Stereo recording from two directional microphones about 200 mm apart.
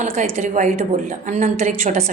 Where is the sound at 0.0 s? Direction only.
35° right (ahead or behind).